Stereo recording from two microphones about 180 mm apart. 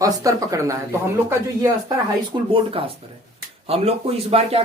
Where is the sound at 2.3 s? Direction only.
30° right (ahead or behind).